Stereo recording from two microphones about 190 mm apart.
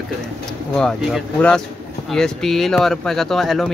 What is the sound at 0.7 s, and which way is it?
Speech, 5° left (ahead or behind).